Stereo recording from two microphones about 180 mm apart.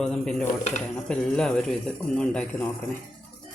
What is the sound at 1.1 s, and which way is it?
A man's voice, 5° left (ahead or behind).